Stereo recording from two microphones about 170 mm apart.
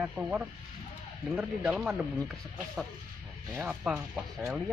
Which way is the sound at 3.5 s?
5° right (ahead or behind).